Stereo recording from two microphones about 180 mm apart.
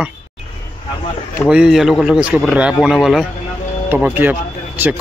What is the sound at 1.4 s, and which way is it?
A man's voice, 5° right (ahead or behind).